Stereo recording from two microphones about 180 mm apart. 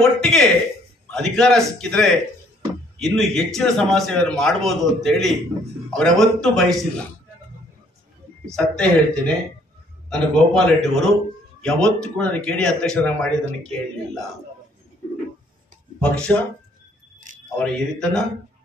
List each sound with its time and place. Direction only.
0.0 s speech: 5° left (ahead or behind)
8.5 s speech: 5° left (ahead or behind)
16.0 s speech: 5° left (ahead or behind)
17.3 s a sound: 45° right (ahead or behind)
17.6 s speech: 5° left (ahead or behind)